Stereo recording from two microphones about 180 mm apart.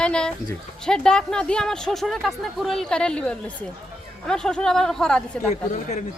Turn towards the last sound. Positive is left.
turn(degrees=40)  # may be behind; listen again after turning